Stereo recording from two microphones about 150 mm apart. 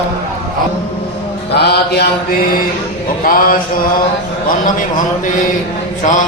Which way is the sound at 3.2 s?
70° left (ahead or behind).